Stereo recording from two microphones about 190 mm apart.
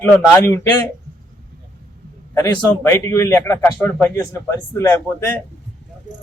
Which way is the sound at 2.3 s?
15° left (ahead or behind).